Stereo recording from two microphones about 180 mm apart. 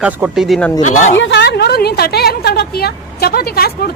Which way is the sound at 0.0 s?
5° right (ahead or behind).